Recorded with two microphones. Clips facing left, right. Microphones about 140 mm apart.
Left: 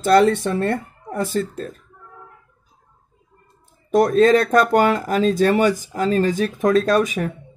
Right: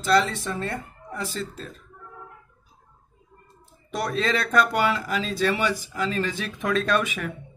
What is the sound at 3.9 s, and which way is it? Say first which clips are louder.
Speech: left 12 dB; 45° left (ahead or behind).